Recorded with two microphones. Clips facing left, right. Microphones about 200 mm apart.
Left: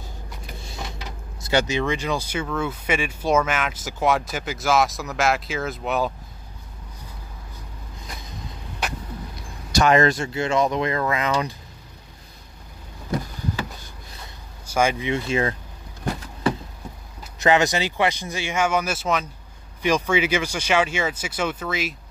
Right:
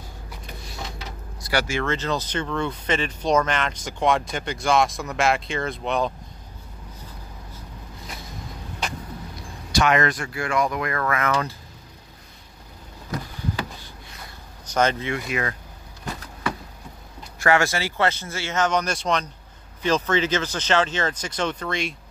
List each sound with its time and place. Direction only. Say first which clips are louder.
1.4 s speech: left 3 dB; 20° left (ahead or behind); by 6.1 s 5° left (ahead or behind)
9.7 s speech: left 3 dB; 35° left (ahead or behind); by 11.5 s 15° left (ahead or behind)
14.7 s speech: left 1 dB; 10° left (ahead or behind)
15.1 s speech: left 4 dB; 25° left (ahead or behind)
17.4 s speech: left 2 dB; 20° left (ahead or behind); by 21.9 s 5° left (ahead or behind)